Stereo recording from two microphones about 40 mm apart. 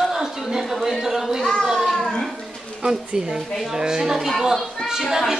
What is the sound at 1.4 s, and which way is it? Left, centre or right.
Speech, centre.